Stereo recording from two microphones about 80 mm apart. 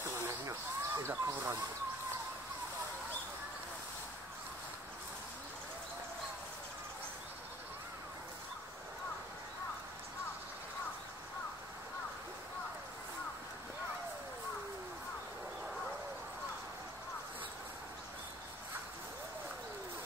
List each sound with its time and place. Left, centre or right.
0.0 s snake: right